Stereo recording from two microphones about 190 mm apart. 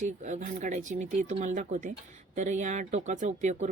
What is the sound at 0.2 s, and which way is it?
Speech, 40° right (ahead or behind).